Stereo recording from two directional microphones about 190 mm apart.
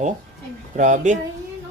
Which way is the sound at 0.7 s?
40° right (ahead or behind).